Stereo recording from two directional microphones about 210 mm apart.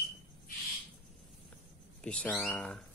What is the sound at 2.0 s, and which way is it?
Speech, 5° left (ahead or behind).